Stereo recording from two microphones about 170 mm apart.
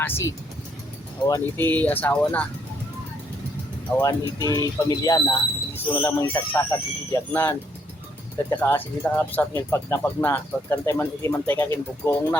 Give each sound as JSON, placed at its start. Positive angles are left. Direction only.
{"t": 0.0, "sound": "speech", "side_deg": 15}
{"t": 3.9, "sound": "speech", "side_deg": 5}
{"t": 4.4, "sound": "speech", "side_deg": 20}